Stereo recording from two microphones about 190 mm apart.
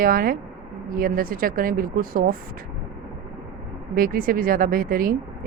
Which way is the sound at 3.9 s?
50° right (ahead or behind).